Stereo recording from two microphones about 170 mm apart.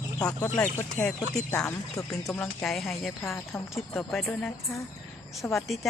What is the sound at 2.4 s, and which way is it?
Speech, 5° left (ahead or behind).